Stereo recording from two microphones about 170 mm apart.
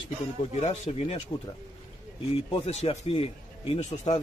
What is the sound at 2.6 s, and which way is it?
A man's voice, 40° left (ahead or behind).